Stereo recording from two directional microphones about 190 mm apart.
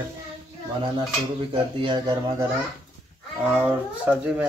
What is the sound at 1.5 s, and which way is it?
Speech, 25° right (ahead or behind).